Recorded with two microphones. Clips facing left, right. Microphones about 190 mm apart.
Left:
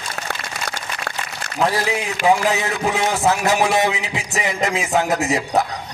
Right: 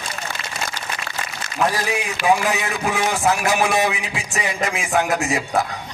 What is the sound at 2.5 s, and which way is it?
A man's voice, 20° left (ahead or behind).